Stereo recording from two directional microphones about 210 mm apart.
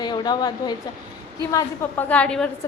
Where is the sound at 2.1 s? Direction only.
5° left (ahead or behind).